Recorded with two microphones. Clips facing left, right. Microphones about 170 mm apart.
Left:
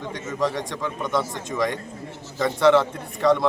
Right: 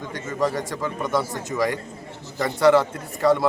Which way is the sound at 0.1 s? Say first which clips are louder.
Right 1 dB; centre (ahead or behind).